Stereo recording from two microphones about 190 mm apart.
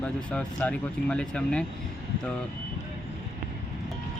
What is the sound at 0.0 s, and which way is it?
Speech, 5° left (ahead or behind).